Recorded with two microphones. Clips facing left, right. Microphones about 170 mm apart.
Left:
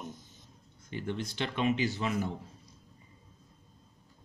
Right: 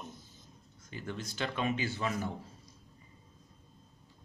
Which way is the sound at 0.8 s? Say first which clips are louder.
Left 5 dB; 25° left (ahead or behind).